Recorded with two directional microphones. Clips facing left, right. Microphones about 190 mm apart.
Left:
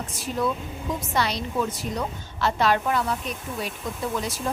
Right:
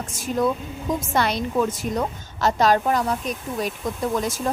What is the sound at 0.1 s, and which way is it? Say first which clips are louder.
A woman's voice: right 5 dB; 45° right (ahead or behind).